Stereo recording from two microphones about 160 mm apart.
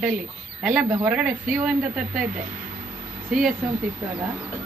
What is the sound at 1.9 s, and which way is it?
Speech, 55° right (ahead or behind).